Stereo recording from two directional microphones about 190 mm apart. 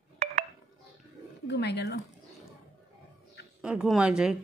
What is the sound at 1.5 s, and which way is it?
Speech, 60° left (ahead or behind).